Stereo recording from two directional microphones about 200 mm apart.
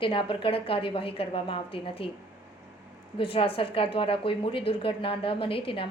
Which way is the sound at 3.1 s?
25° left (ahead or behind).